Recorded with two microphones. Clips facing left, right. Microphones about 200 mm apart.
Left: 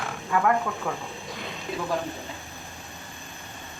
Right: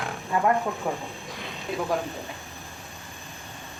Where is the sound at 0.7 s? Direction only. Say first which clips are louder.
Right 2 dB; 25° right (ahead or behind).